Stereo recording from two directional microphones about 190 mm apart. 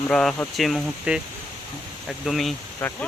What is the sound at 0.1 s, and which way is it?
Speech, 5° left (ahead or behind).